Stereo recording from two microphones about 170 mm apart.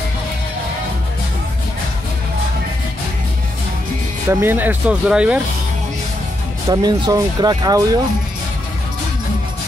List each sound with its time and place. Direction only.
4.3 s speech: 15° right (ahead or behind)
6.7 s speech: 25° right (ahead or behind)